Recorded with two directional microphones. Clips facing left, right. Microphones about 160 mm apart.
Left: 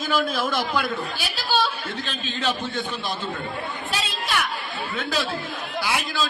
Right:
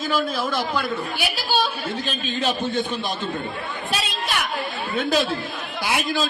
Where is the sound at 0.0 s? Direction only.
5° right (ahead or behind).